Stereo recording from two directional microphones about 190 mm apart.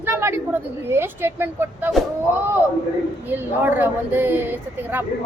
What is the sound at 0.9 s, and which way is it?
A child's voice, 10° right (ahead or behind).